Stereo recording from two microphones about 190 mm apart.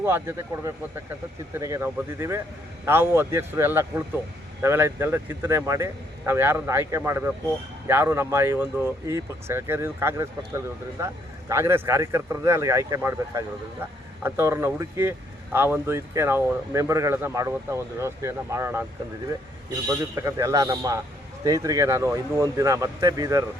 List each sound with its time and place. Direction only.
0.0 s speech: 15° right (ahead or behind)
20.2 s speech: 15° right (ahead or behind)